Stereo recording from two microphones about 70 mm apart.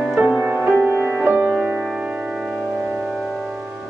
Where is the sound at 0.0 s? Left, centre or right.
Centre.